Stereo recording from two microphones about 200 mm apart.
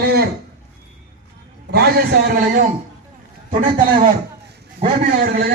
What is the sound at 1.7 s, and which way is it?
Speech, 50° right (ahead or behind).